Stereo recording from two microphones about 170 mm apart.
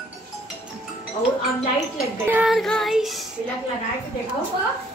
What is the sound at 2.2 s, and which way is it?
Speech, 10° right (ahead or behind).